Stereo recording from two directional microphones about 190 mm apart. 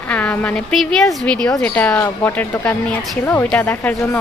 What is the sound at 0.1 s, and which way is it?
Speech, 5° left (ahead or behind).